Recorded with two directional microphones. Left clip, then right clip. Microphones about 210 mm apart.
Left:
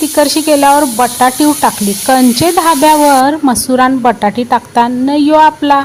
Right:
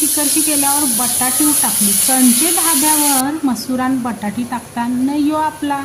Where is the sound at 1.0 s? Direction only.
35° left (ahead or behind).